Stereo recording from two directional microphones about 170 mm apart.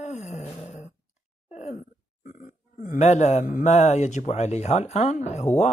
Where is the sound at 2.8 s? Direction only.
45° left (ahead or behind).